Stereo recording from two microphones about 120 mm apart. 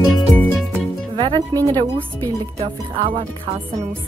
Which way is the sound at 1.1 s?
40° right (ahead or behind).